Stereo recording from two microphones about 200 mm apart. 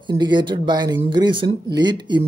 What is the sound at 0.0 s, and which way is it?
Speech, 20° right (ahead or behind).